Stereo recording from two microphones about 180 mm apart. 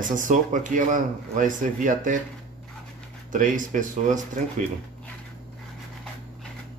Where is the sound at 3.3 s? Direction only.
45° right (ahead or behind).